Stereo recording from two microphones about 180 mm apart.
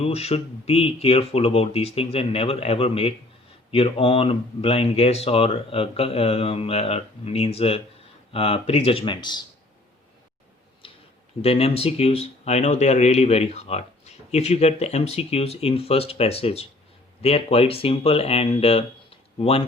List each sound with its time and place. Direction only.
0.0 s speech: 35° left (ahead or behind)
10.8 s a sound: 30° left (ahead or behind)
11.4 s speech: 35° left (ahead or behind)